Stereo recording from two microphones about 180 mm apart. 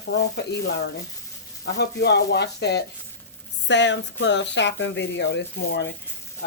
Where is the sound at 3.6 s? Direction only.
80° left.